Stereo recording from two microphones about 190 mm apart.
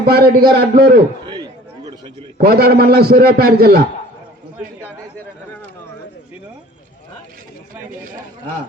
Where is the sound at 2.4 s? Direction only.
55° right (ahead or behind).